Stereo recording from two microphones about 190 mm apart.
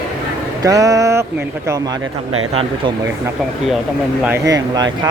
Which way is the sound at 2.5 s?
30° right (ahead or behind).